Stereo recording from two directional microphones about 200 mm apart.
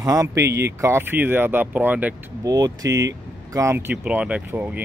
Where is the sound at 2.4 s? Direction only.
20° right (ahead or behind).